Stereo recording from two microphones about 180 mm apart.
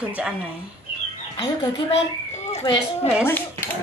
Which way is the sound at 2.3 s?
40° left (ahead or behind).